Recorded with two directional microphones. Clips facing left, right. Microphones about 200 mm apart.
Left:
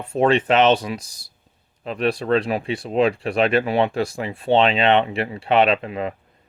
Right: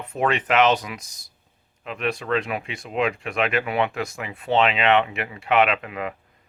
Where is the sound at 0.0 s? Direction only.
30° left (ahead or behind).